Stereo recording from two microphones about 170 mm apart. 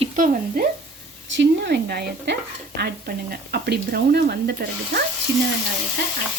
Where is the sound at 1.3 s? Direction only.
90° right.